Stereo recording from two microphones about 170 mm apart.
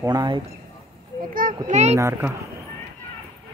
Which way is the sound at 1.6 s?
40° right (ahead or behind).